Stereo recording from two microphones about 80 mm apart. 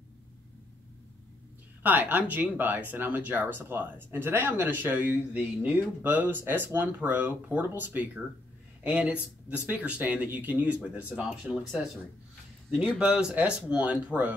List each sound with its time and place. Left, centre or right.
1.8 s speech: right
13.0 s speech: centre